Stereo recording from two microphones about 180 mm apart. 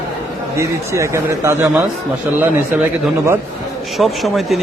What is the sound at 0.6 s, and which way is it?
A man's voice, 15° right (ahead or behind).